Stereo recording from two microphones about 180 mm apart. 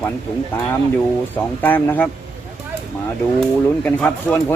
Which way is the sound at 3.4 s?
5° left (ahead or behind).